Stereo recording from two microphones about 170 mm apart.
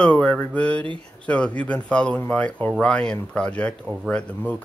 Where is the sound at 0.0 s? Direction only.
5° left (ahead or behind).